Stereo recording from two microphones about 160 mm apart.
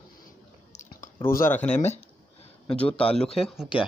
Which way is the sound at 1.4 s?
10° left (ahead or behind).